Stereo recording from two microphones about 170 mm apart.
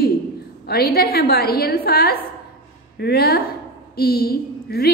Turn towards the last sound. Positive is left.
turn(degrees=65)  # may be behind; listen again after turning